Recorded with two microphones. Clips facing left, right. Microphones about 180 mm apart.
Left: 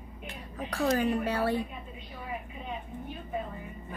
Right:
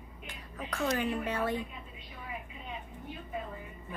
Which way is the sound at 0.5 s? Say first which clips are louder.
Left 4 dB; 35° left (ahead or behind).